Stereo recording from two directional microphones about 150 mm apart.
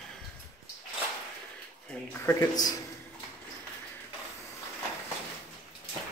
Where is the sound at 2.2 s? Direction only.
20° left (ahead or behind).